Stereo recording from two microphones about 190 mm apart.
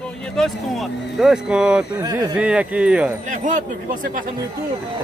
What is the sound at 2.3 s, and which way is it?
Speech, 5° right (ahead or behind).